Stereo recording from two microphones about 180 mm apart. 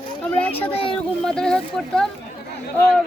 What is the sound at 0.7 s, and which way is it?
Speech, 30° left (ahead or behind).